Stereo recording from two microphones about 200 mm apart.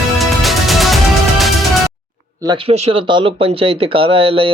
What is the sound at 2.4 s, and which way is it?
Speech, 25° right (ahead or behind).